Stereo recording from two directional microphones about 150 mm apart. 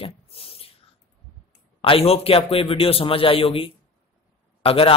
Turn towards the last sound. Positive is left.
turn(degrees=40)  # may be behind; listen again after turning